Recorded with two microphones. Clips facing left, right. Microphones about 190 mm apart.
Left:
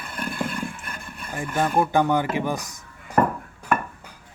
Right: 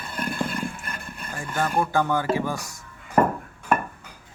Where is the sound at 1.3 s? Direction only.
20° left (ahead or behind).